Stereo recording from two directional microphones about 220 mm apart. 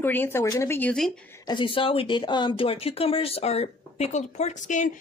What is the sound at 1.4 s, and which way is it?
Speech, 20° left (ahead or behind).